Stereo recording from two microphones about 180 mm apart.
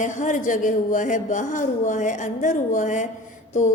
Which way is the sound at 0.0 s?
45° left (ahead or behind).